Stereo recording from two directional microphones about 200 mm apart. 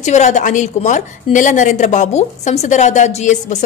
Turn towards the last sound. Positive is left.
turn(degrees=35)  # may be behind; listen again after turning